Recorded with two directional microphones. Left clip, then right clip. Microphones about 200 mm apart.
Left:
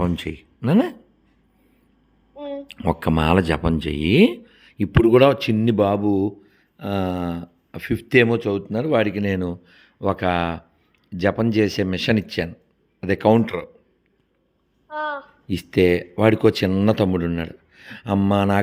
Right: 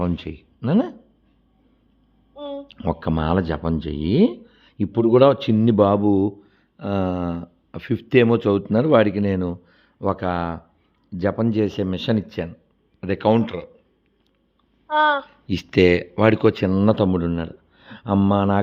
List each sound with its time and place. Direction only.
0.0 s speech: 10° left (ahead or behind)
2.7 s speech: 10° left (ahead or behind)
8.4 s speech: 15° right (ahead or behind); by 13.7 s 15° left (ahead or behind)
14.8 s a sound: 25° right (ahead or behind)
15.4 s speech: centre (ahead or behind)